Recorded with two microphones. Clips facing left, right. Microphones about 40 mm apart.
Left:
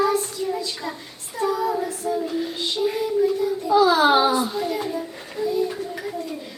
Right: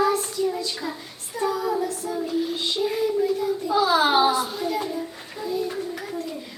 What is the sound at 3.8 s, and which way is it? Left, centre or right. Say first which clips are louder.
A woman's voice: left 2 dB; centre.